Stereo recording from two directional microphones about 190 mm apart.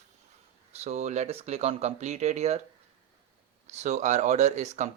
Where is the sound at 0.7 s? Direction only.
35° right (ahead or behind).